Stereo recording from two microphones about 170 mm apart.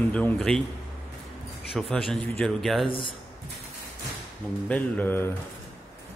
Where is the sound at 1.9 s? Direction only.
5° left (ahead or behind).